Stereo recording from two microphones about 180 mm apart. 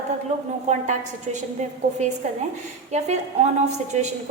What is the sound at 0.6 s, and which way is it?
A woman's voice, 40° right (ahead or behind).